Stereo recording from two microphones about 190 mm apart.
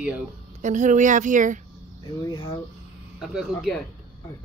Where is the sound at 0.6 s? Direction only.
40° right (ahead or behind).